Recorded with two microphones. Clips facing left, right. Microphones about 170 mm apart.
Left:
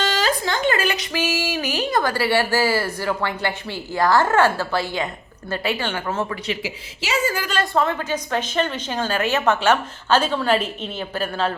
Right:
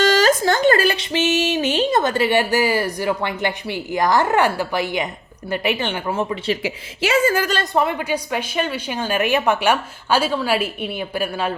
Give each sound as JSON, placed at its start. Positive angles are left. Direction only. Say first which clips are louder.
{"t": 0.0, "sound": "a woman's voice", "louder": "right 6 dB", "side_deg": -45}
{"t": 6.6, "sound": "a woman's voice", "louder": "right 7 dB", "side_deg": -55}
{"t": 7.6, "sound": "a woman's voice", "louder": "right 1 dB", "side_deg": -15}